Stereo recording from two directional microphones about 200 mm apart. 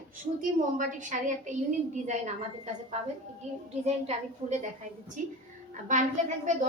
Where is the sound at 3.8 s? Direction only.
35° right (ahead or behind).